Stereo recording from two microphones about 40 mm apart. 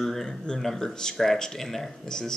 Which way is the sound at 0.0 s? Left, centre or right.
Centre.